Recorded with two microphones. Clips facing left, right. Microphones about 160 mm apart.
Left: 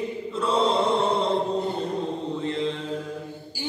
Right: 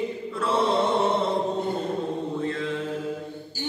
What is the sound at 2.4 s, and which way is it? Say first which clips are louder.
Mantra: left 2 dB; 20° left (ahead or behind).